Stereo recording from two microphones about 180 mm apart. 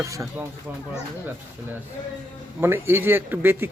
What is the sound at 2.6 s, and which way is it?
Speech, 15° right (ahead or behind).